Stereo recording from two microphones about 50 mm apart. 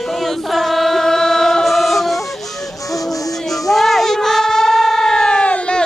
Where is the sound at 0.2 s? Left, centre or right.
Centre.